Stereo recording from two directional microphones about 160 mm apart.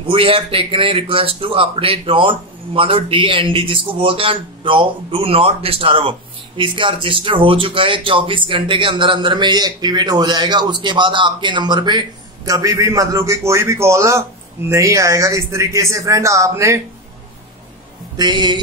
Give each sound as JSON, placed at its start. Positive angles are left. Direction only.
{"t": 0.0, "sound": "a man's voice", "side_deg": -35}
{"t": 18.1, "sound": "speech", "side_deg": -25}